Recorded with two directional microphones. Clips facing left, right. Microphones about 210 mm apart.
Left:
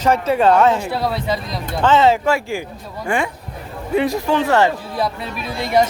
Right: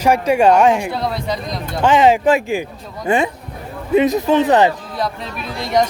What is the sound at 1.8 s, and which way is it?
Speech, 15° right (ahead or behind).